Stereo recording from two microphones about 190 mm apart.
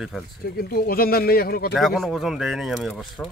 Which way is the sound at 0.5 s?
50° left (ahead or behind).